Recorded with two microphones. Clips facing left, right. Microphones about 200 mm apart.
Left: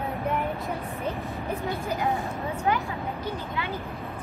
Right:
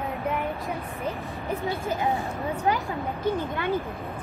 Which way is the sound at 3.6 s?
50° right (ahead or behind).